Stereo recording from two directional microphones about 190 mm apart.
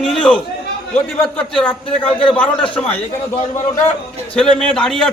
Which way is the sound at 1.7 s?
25° left (ahead or behind).